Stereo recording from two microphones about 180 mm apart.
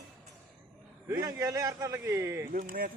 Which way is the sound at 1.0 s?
20° right (ahead or behind).